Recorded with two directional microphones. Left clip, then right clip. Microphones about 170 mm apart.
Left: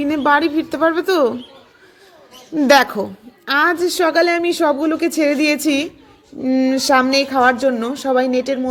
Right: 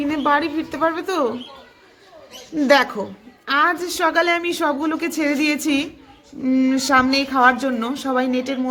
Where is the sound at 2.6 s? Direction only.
40° left (ahead or behind).